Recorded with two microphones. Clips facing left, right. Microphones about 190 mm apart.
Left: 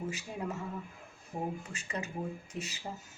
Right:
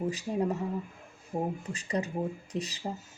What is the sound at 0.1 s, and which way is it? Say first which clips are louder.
Speech: right 8 dB; 35° right (ahead or behind).